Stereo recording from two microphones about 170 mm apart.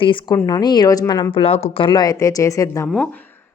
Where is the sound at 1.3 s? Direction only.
35° left (ahead or behind); by 2.8 s 20° left (ahead or behind).